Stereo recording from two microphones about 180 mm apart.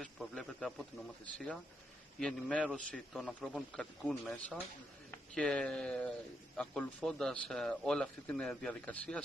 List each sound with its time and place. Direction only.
0.0 s speech: 5° left (ahead or behind)